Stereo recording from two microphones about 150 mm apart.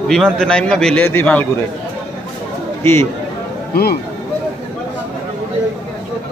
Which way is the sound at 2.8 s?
15° left (ahead or behind).